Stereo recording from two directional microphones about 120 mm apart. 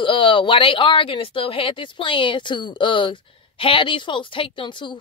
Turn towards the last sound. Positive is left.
turn(degrees=45)  # may be behind; listen again after turning